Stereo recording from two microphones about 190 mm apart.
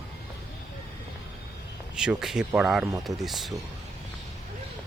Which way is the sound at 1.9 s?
5° right (ahead or behind).